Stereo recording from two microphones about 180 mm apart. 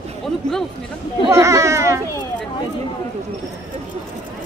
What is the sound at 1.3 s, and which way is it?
Speech, 15° right (ahead or behind).